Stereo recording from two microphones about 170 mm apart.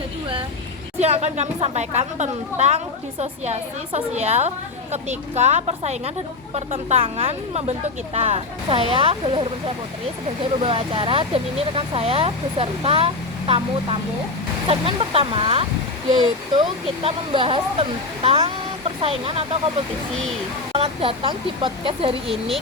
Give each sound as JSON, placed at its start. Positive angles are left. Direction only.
{"t": 0.9, "sound": "speech", "side_deg": -40}
{"t": 20.7, "sound": "speech", "side_deg": -35}